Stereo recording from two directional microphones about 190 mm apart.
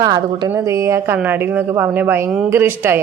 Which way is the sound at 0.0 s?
20° right (ahead or behind).